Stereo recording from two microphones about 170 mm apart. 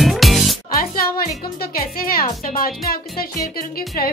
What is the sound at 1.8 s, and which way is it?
Music, 60° left (ahead or behind).